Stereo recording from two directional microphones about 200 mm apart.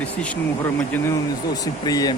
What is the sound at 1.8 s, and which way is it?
Speech, 20° left (ahead or behind).